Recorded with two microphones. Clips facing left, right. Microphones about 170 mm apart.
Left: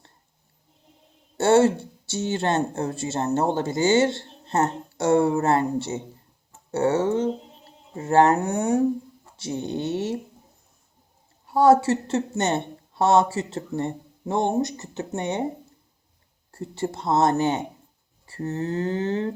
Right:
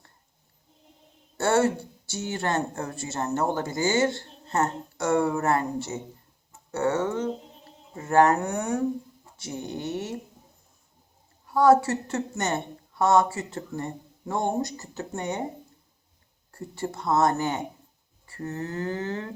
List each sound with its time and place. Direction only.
1.4 s speech: 25° left (ahead or behind)
11.4 s speech: 25° left (ahead or behind)
16.5 s speech: 25° left (ahead or behind)